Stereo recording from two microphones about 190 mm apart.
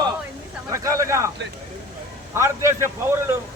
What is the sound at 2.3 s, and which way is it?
Speech, 15° right (ahead or behind).